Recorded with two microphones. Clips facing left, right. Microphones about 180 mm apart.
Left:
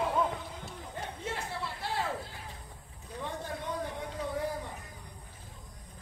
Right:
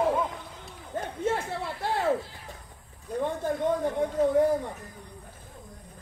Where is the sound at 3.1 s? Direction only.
50° right (ahead or behind).